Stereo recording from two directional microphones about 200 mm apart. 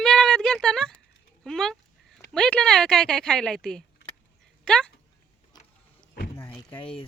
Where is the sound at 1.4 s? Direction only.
Centre (ahead or behind).